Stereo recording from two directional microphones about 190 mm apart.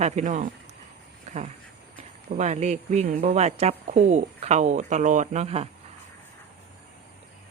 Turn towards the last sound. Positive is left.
turn(degrees=-35)  # may be behind; listen again after turning